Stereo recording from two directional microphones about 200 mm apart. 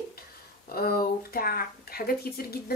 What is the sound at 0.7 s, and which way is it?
Speech, 50° left (ahead or behind).